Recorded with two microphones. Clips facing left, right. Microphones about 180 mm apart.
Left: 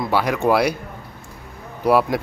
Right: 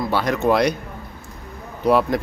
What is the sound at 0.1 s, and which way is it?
Speech, 10° left (ahead or behind).